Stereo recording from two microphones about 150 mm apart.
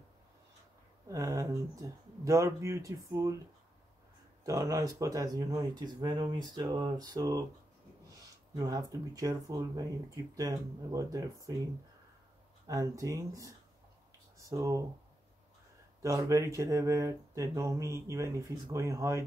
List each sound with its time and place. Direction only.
1.0 s speech: 20° right (ahead or behind)
4.5 s speech: 25° right (ahead or behind)
8.5 s speech: 25° right (ahead or behind)
14.5 s speech: 20° right (ahead or behind)
16.0 s speech: 20° right (ahead or behind)